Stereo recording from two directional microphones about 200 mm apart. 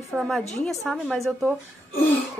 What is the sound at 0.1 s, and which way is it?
Speech, centre (ahead or behind).